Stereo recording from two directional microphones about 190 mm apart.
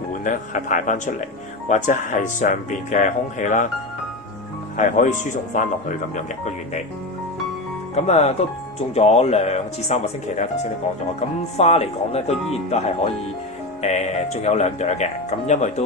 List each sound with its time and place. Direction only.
0.2 s speech: 45° left (ahead or behind)
4.7 s speech: 40° left (ahead or behind)
7.9 s speech: 35° left (ahead or behind)
11.5 s speech: 35° left (ahead or behind)